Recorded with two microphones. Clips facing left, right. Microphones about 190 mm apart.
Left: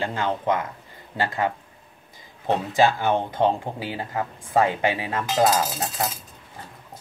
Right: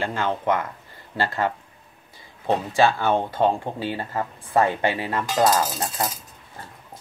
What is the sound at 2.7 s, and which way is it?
Speech, 15° left (ahead or behind).